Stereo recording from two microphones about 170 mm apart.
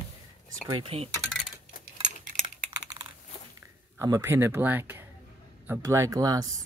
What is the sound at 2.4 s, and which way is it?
Computer keyboard, 30° right (ahead or behind).